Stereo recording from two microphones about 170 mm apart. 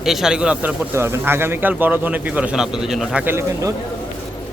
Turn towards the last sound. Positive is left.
turn(degrees=-15)  # may be behind; listen again after turning